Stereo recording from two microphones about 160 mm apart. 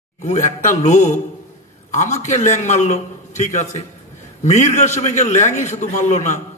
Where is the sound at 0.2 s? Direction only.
50° left (ahead or behind).